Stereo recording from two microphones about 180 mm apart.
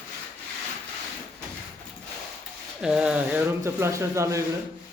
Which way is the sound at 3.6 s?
15° right (ahead or behind).